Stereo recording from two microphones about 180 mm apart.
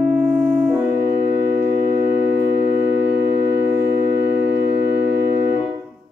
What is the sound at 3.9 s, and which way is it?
Music, 65° right (ahead or behind).